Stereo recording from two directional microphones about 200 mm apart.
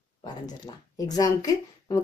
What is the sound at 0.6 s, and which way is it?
Speech, 20° left (ahead or behind).